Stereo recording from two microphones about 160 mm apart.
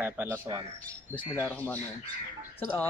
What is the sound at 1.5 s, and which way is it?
Speech, 10° left (ahead or behind).